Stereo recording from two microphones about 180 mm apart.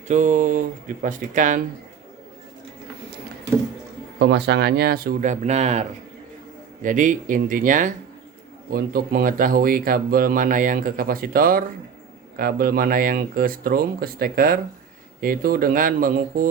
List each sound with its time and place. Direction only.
0.1 s speech: 45° right (ahead or behind)
4.2 s speech: 70° right (ahead or behind); by 5.8 s 40° right (ahead or behind)
6.8 s speech: 45° right (ahead or behind)